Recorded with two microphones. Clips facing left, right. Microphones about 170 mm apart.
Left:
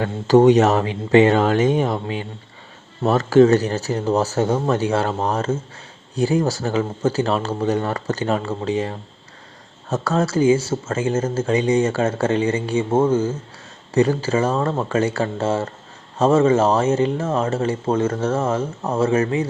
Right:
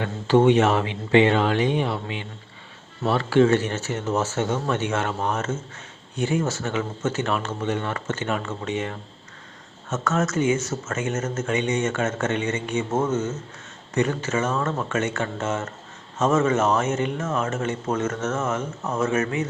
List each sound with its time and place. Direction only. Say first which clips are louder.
0.0 s speech: left 5 dB; 40° left (ahead or behind)